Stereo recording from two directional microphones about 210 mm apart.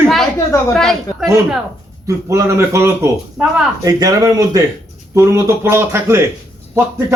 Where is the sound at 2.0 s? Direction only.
15° right (ahead or behind).